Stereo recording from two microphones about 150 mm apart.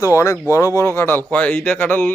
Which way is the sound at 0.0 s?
20° left (ahead or behind).